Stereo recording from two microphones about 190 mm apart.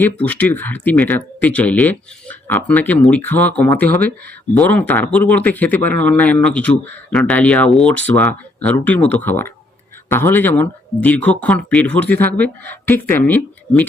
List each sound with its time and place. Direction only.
0.0 s speech: 10° left (ahead or behind)